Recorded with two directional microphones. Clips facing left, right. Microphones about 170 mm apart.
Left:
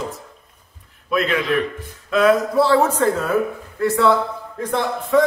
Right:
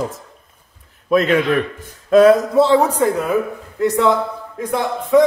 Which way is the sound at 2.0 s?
35° right (ahead or behind).